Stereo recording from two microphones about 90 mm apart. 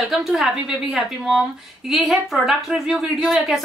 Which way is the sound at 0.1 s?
5° right (ahead or behind).